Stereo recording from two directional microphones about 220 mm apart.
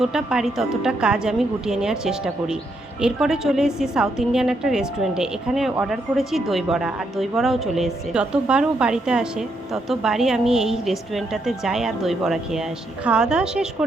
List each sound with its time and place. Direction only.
0.0 s a woman's voice: centre (ahead or behind)